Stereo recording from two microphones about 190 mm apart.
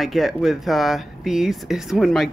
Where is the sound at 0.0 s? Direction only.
Centre (ahead or behind).